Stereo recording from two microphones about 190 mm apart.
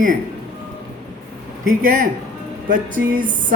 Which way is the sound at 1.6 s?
45° right (ahead or behind).